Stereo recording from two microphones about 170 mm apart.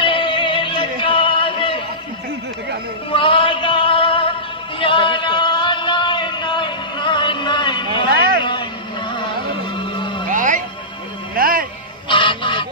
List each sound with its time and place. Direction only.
0.0 s music: 30° left (ahead or behind)
3.1 s a sound: 30° left (ahead or behind)
9.1 s music: 30° left (ahead or behind)
10.3 s music: 50° right (ahead or behind)
12.1 s goose: 30° left (ahead or behind)